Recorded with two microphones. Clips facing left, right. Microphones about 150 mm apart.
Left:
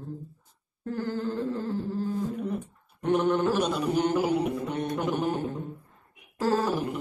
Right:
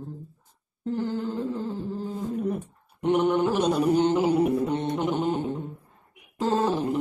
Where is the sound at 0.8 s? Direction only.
20° right (ahead or behind).